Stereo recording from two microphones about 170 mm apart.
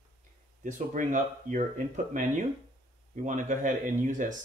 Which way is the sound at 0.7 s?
45° right (ahead or behind).